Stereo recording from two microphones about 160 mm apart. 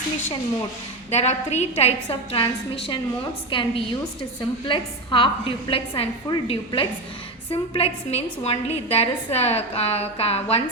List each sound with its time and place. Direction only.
1.1 s a woman's voice: 45° left (ahead or behind)